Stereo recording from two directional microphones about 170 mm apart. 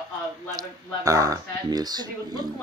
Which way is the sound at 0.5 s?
20° right (ahead or behind).